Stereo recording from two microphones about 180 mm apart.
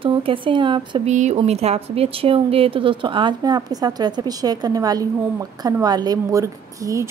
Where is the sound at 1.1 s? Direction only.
40° right (ahead or behind).